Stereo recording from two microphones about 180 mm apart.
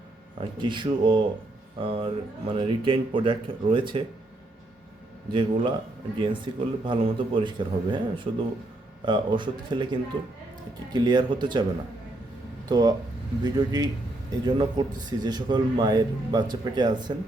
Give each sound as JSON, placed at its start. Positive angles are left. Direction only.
{"t": 0.3, "sound": "a man's voice", "side_deg": -25}
{"t": 5.3, "sound": "a man's voice", "side_deg": -25}
{"t": 12.6, "sound": "a man's voice", "side_deg": -20}